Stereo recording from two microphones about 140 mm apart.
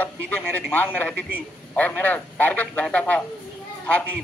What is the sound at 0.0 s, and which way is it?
Speech, 10° left (ahead or behind).